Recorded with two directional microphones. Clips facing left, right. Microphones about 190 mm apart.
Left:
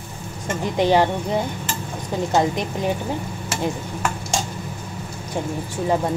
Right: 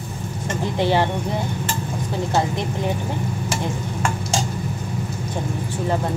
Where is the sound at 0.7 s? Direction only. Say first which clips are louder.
Left 3 dB; 15° left (ahead or behind).